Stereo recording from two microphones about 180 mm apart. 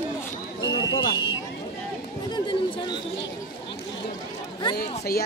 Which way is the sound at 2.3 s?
25° left (ahead or behind).